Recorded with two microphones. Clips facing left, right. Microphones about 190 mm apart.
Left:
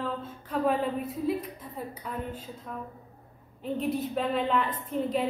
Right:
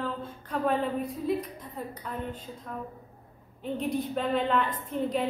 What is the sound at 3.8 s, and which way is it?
A woman's voice, centre (ahead or behind).